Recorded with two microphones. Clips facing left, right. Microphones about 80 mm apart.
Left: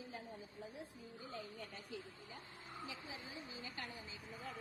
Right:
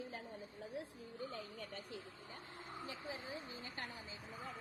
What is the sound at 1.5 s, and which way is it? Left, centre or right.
Speech, right.